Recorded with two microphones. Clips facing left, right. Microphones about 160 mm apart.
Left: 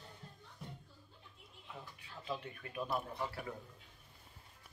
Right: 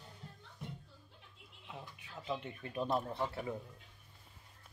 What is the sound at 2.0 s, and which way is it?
A man's voice, 20° right (ahead or behind).